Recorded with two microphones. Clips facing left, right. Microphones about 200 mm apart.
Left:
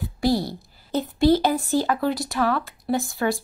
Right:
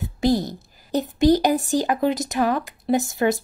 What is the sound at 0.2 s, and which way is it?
Speech, 20° right (ahead or behind).